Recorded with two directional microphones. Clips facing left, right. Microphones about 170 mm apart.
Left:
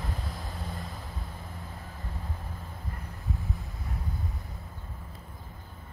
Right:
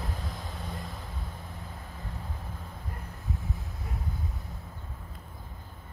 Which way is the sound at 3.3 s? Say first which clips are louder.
Even; centre (ahead or behind).